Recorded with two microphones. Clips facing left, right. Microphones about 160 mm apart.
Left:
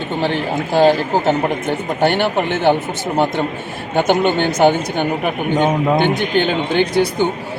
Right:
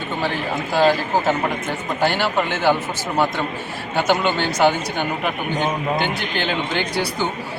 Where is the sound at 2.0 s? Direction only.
55° left (ahead or behind).